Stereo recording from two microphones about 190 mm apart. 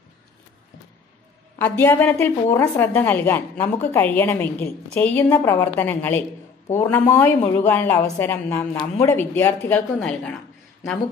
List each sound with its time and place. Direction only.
1.6 s a woman's voice: 10° left (ahead or behind)